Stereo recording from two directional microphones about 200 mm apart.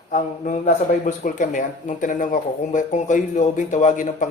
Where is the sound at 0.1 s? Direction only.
40° left (ahead or behind).